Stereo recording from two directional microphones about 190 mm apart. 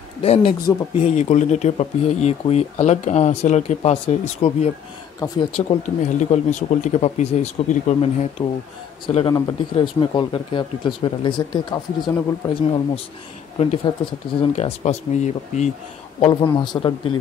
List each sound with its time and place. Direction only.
0.2 s speech: 30° left (ahead or behind)
5.2 s speech: 25° left (ahead or behind)
6.1 s speech: 40° left (ahead or behind); by 12.2 s 20° left (ahead or behind)
13.6 s speech: 30° left (ahead or behind)
16.3 s speech: 20° left (ahead or behind)